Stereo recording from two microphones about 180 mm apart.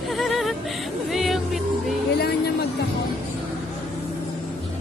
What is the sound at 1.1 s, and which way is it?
Music, centre (ahead or behind).